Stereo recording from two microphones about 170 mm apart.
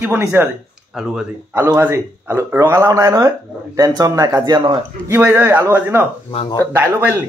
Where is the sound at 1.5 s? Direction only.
15° right (ahead or behind).